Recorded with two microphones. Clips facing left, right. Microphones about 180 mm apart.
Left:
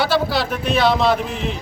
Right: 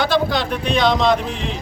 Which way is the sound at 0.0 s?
5° left (ahead or behind).